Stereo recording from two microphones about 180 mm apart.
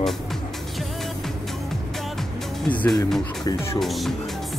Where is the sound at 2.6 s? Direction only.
10° left (ahead or behind).